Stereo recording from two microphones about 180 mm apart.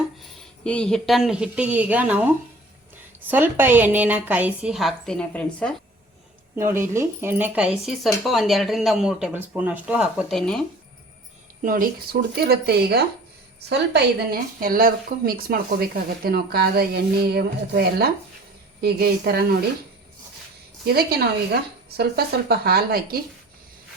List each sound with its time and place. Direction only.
0.6 s a woman's voice: 5° left (ahead or behind)
6.6 s speech: 15° right (ahead or behind); by 10.6 s centre (ahead or behind)
11.6 s a woman's voice: 50° right (ahead or behind)
20.8 s a woman's voice: 60° right (ahead or behind)